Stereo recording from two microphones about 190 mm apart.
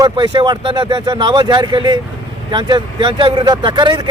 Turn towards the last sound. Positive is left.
turn(degrees=-25)  # may be behind; listen again after turning